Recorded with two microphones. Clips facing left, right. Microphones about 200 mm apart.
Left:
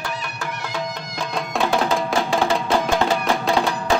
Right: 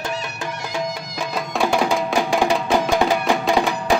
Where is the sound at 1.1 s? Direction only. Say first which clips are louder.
Even; 5° right (ahead or behind).